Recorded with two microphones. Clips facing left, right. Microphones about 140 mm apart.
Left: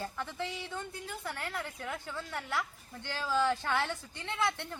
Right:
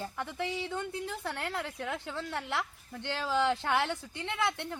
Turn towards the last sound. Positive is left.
turn(degrees=-20)  # may be behind; listen again after turning